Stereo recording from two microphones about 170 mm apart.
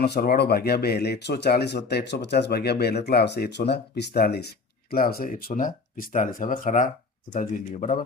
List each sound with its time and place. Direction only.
0.0 s speech: 70° left (ahead or behind); by 7.9 s 50° left (ahead or behind)